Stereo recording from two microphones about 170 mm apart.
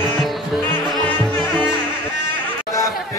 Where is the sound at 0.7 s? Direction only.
10° left (ahead or behind).